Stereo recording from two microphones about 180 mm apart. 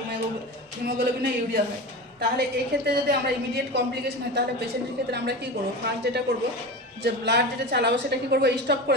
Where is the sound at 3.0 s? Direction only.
65° right (ahead or behind).